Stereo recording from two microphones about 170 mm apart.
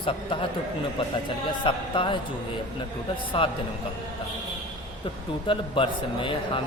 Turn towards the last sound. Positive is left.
turn(degrees=30)  # may be behind; listen again after turning